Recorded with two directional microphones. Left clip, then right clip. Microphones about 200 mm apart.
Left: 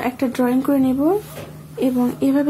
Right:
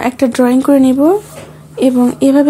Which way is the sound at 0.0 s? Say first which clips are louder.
Right 8 dB; 45° right (ahead or behind).